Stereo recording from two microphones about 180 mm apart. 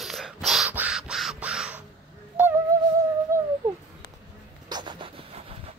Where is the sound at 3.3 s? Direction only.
15° right (ahead or behind).